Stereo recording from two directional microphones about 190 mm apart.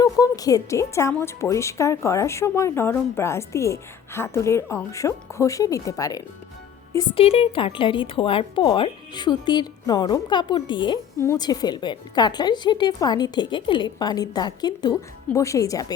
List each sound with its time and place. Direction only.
0.0 s a woman's voice: 20° left (ahead or behind)
7.1 s a woman's voice: 30° left (ahead or behind)